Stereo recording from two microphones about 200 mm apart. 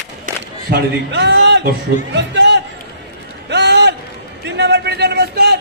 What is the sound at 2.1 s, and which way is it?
Speech, 60° right (ahead or behind).